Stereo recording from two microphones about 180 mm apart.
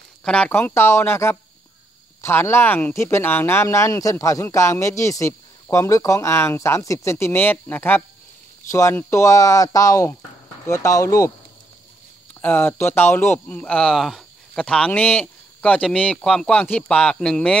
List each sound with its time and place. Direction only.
0.2 s speech: 5° left (ahead or behind)
12.4 s speech: 10° left (ahead or behind)